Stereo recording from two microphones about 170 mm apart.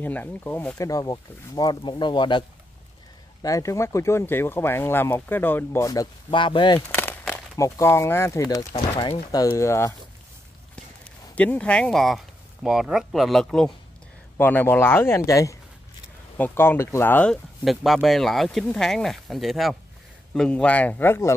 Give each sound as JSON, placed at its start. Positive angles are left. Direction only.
{"t": 0.0, "sound": "speech", "side_deg": 10}
{"t": 3.4, "sound": "speech", "side_deg": 20}
{"t": 6.9, "sound": "speech", "side_deg": 10}
{"t": 8.7, "sound": "speech", "side_deg": 35}
{"t": 9.3, "sound": "speech", "side_deg": 20}
{"t": 11.3, "sound": "speech", "side_deg": 10}